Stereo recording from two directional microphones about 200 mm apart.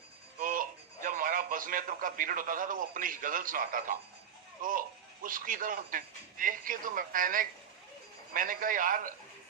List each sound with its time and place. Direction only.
0.3 s speech: 45° right (ahead or behind)